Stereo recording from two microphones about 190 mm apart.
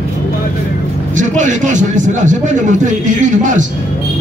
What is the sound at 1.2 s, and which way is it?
Music, 40° right (ahead or behind).